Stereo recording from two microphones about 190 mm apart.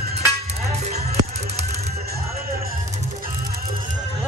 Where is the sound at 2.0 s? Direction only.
55° right (ahead or behind).